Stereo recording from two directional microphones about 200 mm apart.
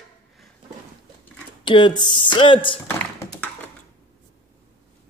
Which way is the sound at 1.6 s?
25° left (ahead or behind).